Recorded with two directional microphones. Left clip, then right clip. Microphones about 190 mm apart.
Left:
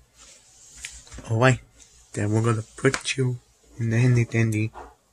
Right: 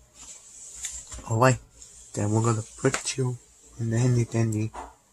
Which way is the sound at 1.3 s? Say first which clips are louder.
Left 1 dB; 20° left (ahead or behind).